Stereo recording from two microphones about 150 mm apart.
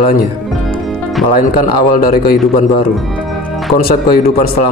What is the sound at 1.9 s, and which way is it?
Speech, 75° left (ahead or behind).